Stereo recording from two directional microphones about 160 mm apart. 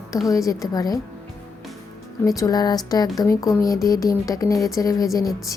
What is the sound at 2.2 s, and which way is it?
Speech, 20° left (ahead or behind).